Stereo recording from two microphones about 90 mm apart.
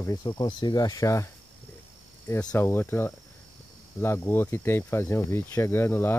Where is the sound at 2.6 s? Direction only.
25° left (ahead or behind).